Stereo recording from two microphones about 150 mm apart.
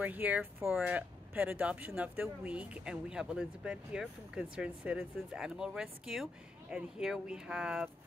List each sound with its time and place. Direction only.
0.0 s speech: 10° right (ahead or behind)